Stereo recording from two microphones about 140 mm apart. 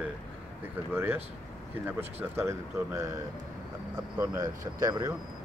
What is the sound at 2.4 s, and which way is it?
Speech, 20° right (ahead or behind).